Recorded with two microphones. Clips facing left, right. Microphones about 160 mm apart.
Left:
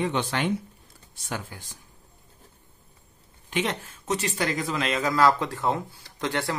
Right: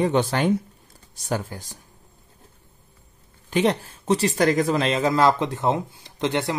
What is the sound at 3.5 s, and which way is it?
Speech, 35° right (ahead or behind).